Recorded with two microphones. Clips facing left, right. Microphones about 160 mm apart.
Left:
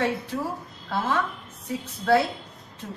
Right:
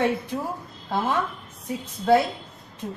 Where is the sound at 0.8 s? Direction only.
15° right (ahead or behind).